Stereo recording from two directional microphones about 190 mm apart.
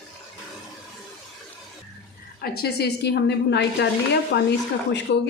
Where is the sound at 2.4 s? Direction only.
55° left (ahead or behind).